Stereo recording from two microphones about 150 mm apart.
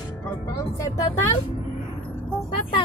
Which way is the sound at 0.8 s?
20° left (ahead or behind).